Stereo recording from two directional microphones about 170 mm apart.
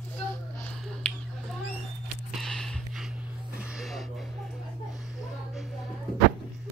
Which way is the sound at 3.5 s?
5° right (ahead or behind).